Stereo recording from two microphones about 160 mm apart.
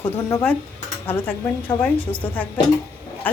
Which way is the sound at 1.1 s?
10° left (ahead or behind).